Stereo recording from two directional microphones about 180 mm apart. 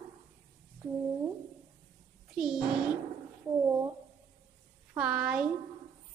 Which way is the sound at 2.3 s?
5° right (ahead or behind).